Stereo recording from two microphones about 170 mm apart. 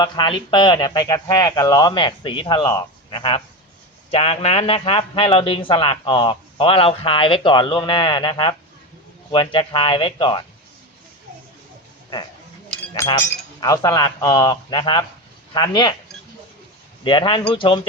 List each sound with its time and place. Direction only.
0.0 s a man's voice: 30° left (ahead or behind)
13.0 s speech: 20° left (ahead or behind)
17.0 s speech: 30° left (ahead or behind)